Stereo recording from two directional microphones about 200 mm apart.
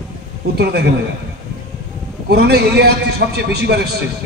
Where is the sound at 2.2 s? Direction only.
55° right (ahead or behind).